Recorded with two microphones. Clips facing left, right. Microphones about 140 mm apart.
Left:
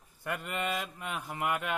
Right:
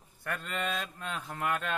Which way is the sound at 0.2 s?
15° left (ahead or behind).